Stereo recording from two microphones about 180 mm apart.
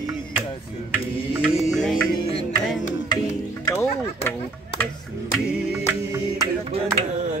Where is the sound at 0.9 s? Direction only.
5° right (ahead or behind).